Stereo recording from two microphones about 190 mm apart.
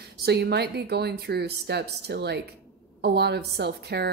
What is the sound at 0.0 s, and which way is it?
A woman's voice, 60° right (ahead or behind).